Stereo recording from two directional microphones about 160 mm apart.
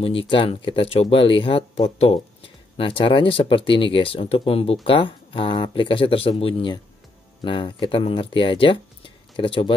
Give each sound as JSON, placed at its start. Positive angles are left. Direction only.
{"t": 0.0, "sound": "speech", "side_deg": 35}